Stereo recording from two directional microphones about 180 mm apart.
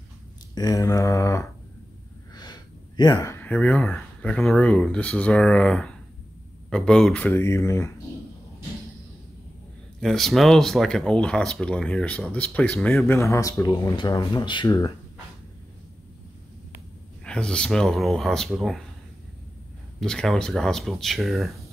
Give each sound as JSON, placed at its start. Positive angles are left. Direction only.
{"t": 0.6, "sound": "speech", "side_deg": 20}
{"t": 9.9, "sound": "speech", "side_deg": 0}
{"t": 17.2, "sound": "speech", "side_deg": 5}
{"t": 20.0, "sound": "speech", "side_deg": 0}